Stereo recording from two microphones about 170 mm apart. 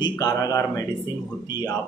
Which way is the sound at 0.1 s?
20° left (ahead or behind).